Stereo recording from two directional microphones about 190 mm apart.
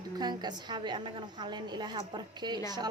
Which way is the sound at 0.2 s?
20° right (ahead or behind).